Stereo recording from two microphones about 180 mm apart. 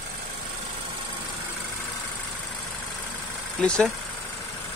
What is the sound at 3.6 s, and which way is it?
Speech, 5° left (ahead or behind).